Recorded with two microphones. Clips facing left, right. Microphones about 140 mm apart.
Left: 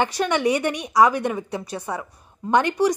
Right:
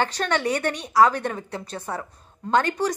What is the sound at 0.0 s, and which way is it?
A woman's voice, 15° left (ahead or behind).